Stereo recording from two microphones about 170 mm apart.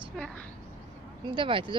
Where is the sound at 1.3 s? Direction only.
30° right (ahead or behind).